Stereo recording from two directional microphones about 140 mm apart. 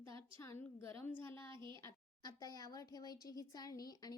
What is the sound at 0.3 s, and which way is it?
A woman's voice, 15° left (ahead or behind).